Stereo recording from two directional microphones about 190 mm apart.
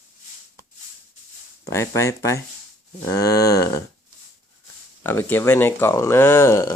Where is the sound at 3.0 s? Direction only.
20° left (ahead or behind).